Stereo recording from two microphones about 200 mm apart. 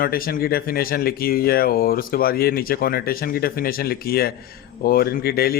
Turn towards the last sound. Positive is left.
turn(degrees=50)  # may be behind; listen again after turning